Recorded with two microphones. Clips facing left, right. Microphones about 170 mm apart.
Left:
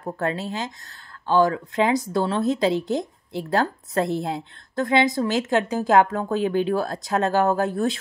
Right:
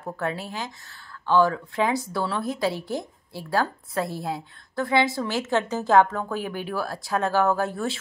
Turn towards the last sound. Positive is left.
turn(degrees=20)  # may be behind; listen again after turning